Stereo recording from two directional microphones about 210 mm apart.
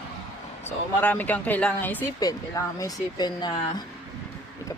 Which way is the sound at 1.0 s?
5° left (ahead or behind).